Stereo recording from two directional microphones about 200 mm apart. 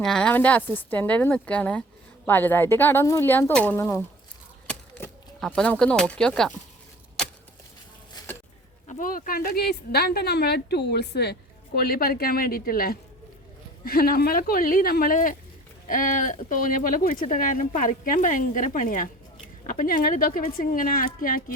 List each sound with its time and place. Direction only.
0.0 s a woman's voice: 5° left (ahead or behind)
8.9 s speech: 45° left (ahead or behind)